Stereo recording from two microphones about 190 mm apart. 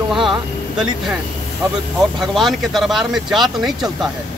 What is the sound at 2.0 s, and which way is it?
Speech, centre (ahead or behind).